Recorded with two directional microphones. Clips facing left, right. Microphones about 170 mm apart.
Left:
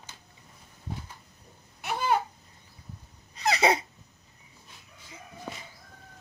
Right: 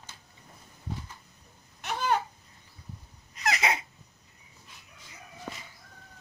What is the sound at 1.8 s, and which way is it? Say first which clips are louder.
Babbling: left 1 dB; 10° left (ahead or behind).